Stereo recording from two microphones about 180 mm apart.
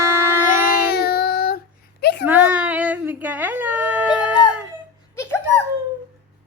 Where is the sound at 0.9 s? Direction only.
60° left (ahead or behind).